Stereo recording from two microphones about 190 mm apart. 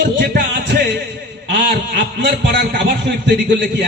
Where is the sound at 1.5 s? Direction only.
70° right (ahead or behind).